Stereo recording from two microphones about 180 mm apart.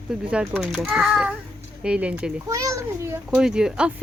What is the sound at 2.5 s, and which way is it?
Speech, 20° right (ahead or behind).